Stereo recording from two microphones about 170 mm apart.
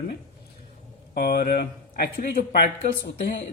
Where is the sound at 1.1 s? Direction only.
65° left (ahead or behind).